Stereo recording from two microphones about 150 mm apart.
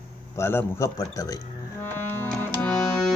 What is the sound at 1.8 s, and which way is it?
Music, 15° left (ahead or behind).